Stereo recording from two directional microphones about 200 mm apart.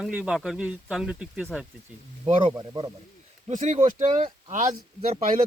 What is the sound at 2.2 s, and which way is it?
Speech, 25° right (ahead or behind).